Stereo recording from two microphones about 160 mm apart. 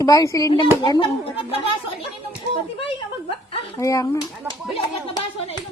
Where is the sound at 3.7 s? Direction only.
20° left (ahead or behind).